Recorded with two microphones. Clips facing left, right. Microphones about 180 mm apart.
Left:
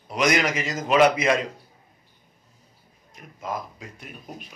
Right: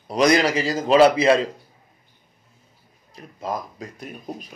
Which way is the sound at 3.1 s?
35° right (ahead or behind).